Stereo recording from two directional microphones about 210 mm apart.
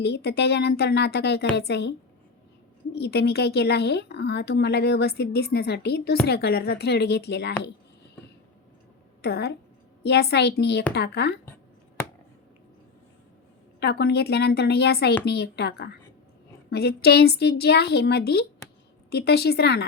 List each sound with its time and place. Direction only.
0.0 s speech: 55° left (ahead or behind)
2.9 s speech: 50° left (ahead or behind)
9.2 s speech: 50° left (ahead or behind)
13.7 s speech: 50° left (ahead or behind)